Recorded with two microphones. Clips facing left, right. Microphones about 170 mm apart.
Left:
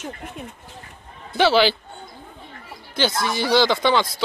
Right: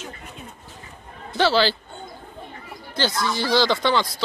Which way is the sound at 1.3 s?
15° left (ahead or behind).